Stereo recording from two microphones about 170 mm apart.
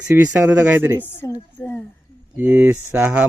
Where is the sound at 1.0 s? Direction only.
10° left (ahead or behind).